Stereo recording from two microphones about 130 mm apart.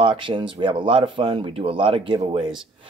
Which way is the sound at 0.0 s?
40° right (ahead or behind).